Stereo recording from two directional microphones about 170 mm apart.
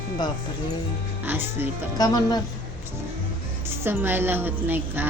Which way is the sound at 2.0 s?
25° left (ahead or behind).